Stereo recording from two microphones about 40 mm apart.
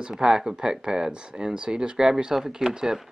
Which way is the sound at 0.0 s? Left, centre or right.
Centre.